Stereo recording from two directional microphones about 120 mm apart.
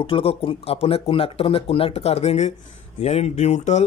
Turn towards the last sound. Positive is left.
turn(degrees=70)  # may be behind; listen again after turning